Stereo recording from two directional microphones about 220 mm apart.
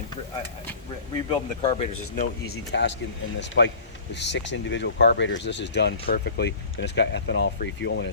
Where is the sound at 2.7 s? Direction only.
50° left (ahead or behind).